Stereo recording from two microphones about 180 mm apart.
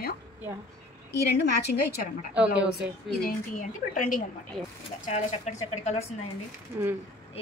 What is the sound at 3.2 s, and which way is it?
Speech, 50° left (ahead or behind).